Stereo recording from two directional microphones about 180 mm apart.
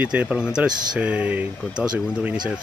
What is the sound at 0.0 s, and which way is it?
Speech, 5° right (ahead or behind).